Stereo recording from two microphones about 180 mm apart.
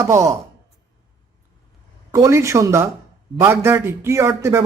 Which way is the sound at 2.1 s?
15° right (ahead or behind).